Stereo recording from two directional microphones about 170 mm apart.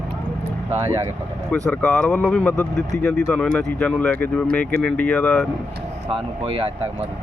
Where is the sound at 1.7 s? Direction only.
10° left (ahead or behind).